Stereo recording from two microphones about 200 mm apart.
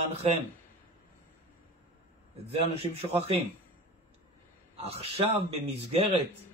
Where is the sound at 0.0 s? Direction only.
35° right (ahead or behind).